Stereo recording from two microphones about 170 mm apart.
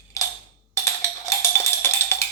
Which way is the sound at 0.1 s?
20° left (ahead or behind).